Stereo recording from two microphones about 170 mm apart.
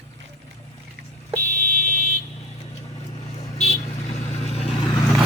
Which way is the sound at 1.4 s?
45° left (ahead or behind).